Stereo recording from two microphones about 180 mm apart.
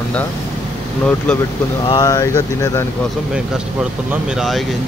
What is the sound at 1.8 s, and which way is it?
Speech, 20° left (ahead or behind).